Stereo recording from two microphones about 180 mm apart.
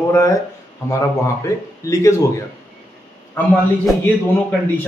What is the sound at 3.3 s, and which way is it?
Speech, centre (ahead or behind).